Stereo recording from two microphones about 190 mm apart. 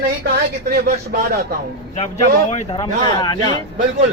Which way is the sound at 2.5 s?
25° left (ahead or behind).